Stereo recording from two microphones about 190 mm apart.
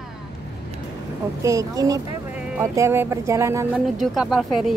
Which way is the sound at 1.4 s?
15° right (ahead or behind).